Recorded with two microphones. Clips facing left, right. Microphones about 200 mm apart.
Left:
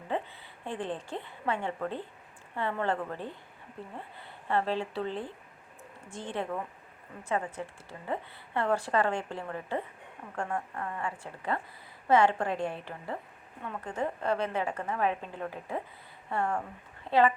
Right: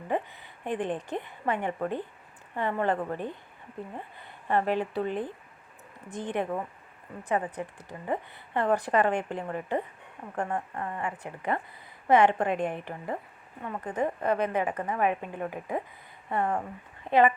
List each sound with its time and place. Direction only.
0.6 s a woman's voice: 20° right (ahead or behind)
4.4 s a woman's voice: 15° right (ahead or behind)
7.9 s a woman's voice: 15° right (ahead or behind)